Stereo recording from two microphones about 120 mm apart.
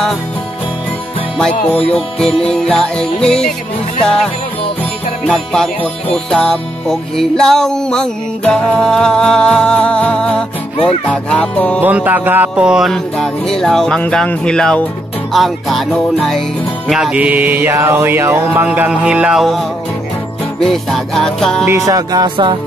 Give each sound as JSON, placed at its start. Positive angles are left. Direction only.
{"t": 1.9, "sound": "music", "side_deg": 5}
{"t": 5.2, "sound": "music", "side_deg": 5}
{"t": 11.8, "sound": "music", "side_deg": -15}
{"t": 20.6, "sound": "music", "side_deg": 0}
{"t": 21.6, "sound": "music", "side_deg": -25}